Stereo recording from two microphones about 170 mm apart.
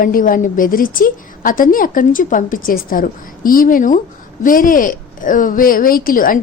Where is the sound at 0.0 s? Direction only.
55° left (ahead or behind).